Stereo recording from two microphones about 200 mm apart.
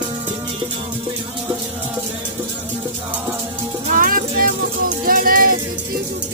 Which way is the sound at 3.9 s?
45° right (ahead or behind).